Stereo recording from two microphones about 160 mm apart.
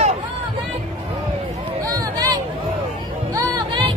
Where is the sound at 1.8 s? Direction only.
25° right (ahead or behind).